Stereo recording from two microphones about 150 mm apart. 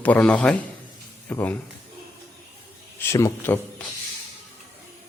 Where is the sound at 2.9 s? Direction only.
20° left (ahead or behind).